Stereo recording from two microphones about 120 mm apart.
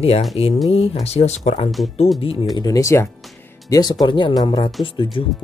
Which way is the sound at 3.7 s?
35° left (ahead or behind).